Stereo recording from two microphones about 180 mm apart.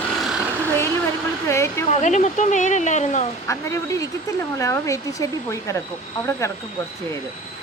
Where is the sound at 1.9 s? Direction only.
40° left (ahead or behind).